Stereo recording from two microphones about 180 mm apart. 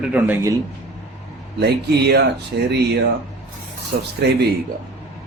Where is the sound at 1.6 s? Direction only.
65° right (ahead or behind).